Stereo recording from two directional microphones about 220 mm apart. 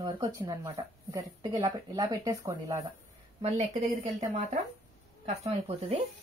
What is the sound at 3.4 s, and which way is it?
A woman's voice, 30° right (ahead or behind).